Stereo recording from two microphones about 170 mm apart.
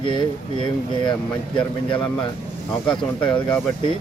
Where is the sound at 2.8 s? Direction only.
30° left (ahead or behind).